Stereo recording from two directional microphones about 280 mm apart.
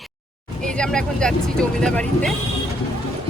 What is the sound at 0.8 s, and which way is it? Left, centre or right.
Speech, centre.